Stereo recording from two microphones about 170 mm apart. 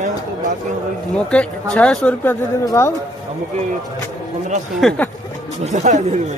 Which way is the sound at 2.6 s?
20° left (ahead or behind).